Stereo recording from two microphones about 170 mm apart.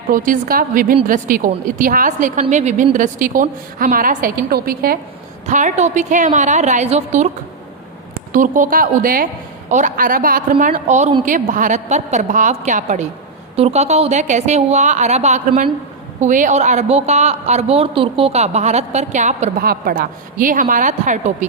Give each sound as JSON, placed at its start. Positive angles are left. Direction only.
{"t": 0.1, "sound": "a woman's voice", "side_deg": -55}
{"t": 5.5, "sound": "a woman's voice", "side_deg": -45}
{"t": 8.1, "sound": "a woman's voice", "side_deg": -50}
{"t": 19.6, "sound": "a woman's voice", "side_deg": -60}